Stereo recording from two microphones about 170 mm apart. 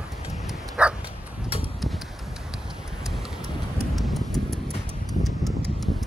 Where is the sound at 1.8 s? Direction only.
Centre (ahead or behind).